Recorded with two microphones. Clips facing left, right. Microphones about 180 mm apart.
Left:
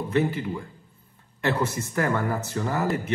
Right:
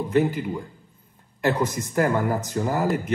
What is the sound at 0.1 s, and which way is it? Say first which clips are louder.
Speech: right 3 dB; 15° right (ahead or behind).